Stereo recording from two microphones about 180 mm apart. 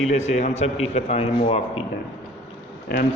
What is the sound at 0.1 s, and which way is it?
A man's voice, 40° left (ahead or behind).